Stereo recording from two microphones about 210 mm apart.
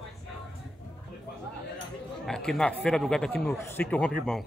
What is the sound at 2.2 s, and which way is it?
Speech, centre (ahead or behind).